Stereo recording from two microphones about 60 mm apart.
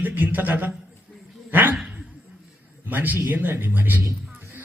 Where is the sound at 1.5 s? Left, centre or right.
Right.